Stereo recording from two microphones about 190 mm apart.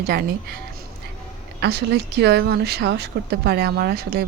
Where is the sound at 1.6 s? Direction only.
60° right (ahead or behind).